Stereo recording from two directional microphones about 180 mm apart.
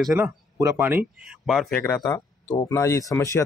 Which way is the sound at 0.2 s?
15° right (ahead or behind).